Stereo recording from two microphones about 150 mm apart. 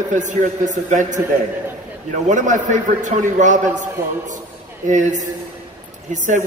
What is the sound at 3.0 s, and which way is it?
Speech, 55° right (ahead or behind).